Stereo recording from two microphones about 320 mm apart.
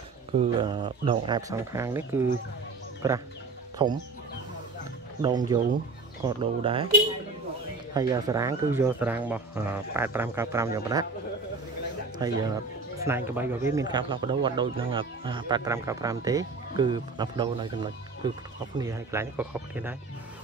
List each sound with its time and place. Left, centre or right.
0.3 s speech: centre
5.5 s speech: centre
7.9 s speech: centre
12.2 s speech: centre